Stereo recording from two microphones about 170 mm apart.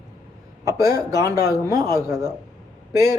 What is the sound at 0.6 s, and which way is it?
A man's voice, 20° right (ahead or behind).